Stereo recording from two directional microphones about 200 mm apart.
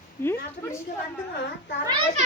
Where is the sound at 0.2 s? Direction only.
10° left (ahead or behind).